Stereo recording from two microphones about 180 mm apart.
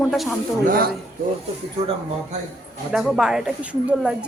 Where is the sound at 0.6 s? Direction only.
55° right (ahead or behind).